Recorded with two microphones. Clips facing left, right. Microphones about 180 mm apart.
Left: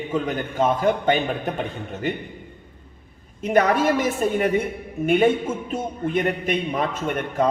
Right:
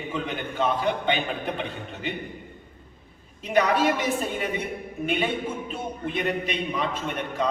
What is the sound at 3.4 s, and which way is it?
A man's voice, 50° left (ahead or behind).